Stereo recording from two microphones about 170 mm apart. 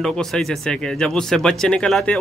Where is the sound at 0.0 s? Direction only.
5° left (ahead or behind).